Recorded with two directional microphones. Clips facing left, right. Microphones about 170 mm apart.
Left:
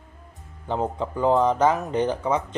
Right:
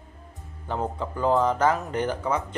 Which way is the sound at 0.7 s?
20° left (ahead or behind).